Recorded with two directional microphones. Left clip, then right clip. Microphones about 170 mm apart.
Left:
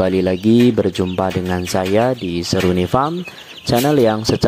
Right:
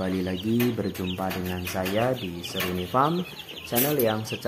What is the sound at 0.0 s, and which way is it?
Speech, 50° left (ahead or behind).